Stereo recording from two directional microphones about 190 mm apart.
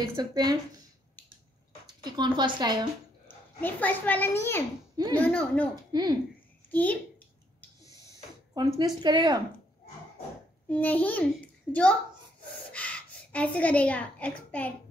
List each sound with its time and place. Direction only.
0.0 s a woman's voice: 20° right (ahead or behind)
2.0 s a woman's voice: 25° right (ahead or behind)
3.3 s a child's voice: 10° left (ahead or behind)
5.9 s speech: 20° right (ahead or behind)
6.7 s a child's voice: 10° left (ahead or behind)
8.7 s a woman's voice: 20° right (ahead or behind)
10.7 s a child's voice: 10° left (ahead or behind)